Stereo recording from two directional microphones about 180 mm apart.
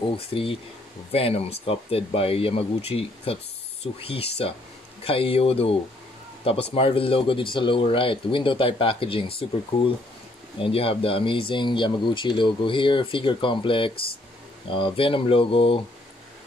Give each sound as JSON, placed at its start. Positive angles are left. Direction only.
{"t": 0.1, "sound": "speech", "side_deg": 30}